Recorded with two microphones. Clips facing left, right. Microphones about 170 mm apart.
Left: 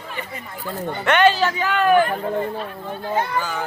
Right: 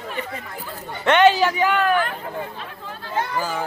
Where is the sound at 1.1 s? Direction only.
15° right (ahead or behind).